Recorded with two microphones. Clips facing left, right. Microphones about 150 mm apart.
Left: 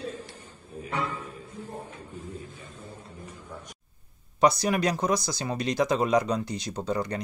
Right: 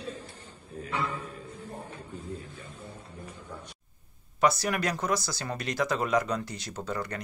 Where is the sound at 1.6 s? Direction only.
10° left (ahead or behind).